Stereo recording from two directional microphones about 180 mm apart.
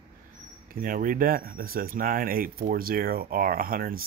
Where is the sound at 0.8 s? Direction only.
50° right (ahead or behind).